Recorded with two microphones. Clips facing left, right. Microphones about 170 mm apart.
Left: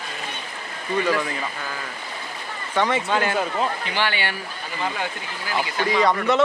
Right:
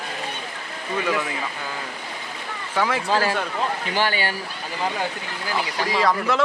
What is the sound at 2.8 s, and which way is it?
Speech, centre (ahead or behind).